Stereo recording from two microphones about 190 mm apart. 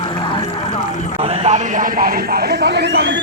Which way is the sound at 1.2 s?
35° right (ahead or behind).